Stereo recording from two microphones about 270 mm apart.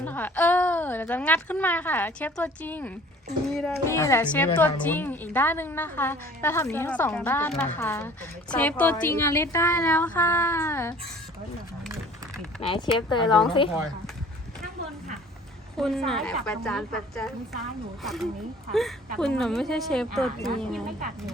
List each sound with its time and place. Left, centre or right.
0.0 s a woman's voice: centre
12.6 s a woman's voice: centre
15.8 s speech: centre